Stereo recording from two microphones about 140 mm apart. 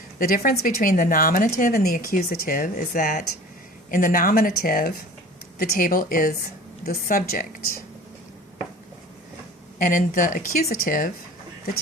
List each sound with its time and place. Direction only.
0.2 s a woman's voice: 90° left
9.7 s speech: 70° left (ahead or behind)